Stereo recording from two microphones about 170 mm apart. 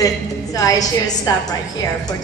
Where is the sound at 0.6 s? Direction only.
20° left (ahead or behind).